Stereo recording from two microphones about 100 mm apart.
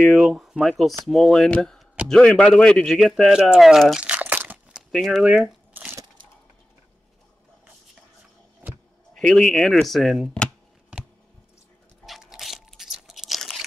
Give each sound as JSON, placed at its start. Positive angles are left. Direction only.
{"t": 0.0, "sound": "speech", "side_deg": 0}
{"t": 4.7, "sound": "a sound", "side_deg": 0}
{"t": 5.2, "sound": "crumpling", "side_deg": -10}
{"t": 8.6, "sound": "a sound", "side_deg": -15}
{"t": 9.1, "sound": "speech", "side_deg": 5}
{"t": 12.1, "sound": "crunch", "side_deg": -5}